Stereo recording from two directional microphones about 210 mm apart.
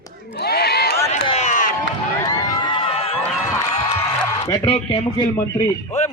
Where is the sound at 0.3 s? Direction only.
50° left (ahead or behind).